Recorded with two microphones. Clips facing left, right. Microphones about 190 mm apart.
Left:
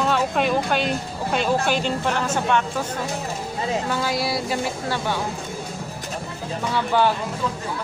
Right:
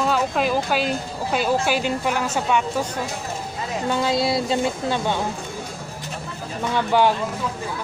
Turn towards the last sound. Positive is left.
turn(degrees=-15)  # may be behind; listen again after turning